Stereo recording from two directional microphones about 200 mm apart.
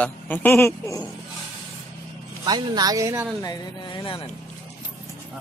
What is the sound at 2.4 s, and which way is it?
Speech, 20° right (ahead or behind).